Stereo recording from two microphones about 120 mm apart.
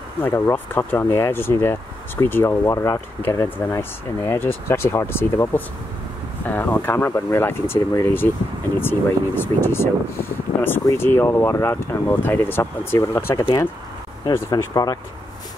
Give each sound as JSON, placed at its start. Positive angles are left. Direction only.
{"t": 0.2, "sound": "speech", "side_deg": 15}
{"t": 14.5, "sound": "speech", "side_deg": 30}